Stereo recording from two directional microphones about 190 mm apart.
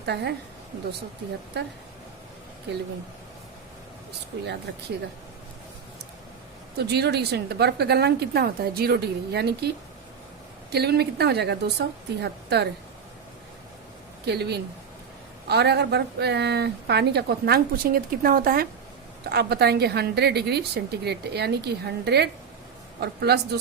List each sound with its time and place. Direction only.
0.0 s speech: 60° right (ahead or behind)
6.7 s speech: 60° right (ahead or behind)
14.3 s speech: 60° right (ahead or behind)